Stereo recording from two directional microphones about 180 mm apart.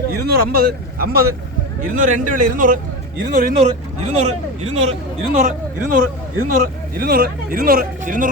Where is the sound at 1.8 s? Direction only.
45° right (ahead or behind).